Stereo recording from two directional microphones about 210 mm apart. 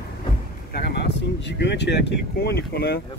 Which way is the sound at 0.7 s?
55° left (ahead or behind).